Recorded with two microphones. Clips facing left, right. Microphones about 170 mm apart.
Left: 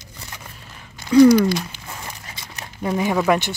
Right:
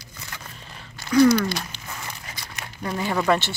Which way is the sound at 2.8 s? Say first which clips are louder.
Left 5 dB; 20° left (ahead or behind).